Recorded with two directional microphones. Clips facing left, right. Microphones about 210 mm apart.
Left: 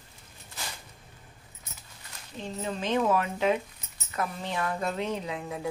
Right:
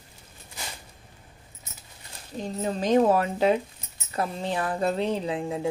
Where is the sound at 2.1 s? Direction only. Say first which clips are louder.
Right 5 dB; 40° right (ahead or behind).